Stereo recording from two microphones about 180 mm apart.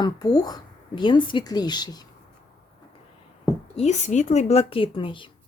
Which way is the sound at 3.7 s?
40° left (ahead or behind).